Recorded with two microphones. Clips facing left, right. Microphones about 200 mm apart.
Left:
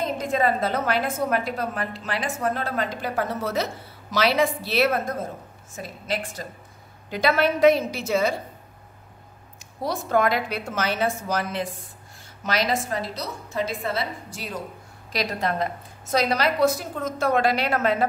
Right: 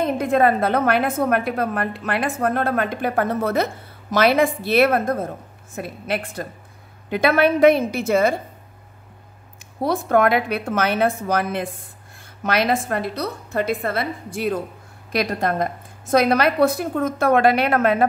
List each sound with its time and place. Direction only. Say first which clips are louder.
0.0 s a woman's voice: right 6 dB; 60° right (ahead or behind)
9.8 s a woman's voice: right 5 dB; 55° right (ahead or behind)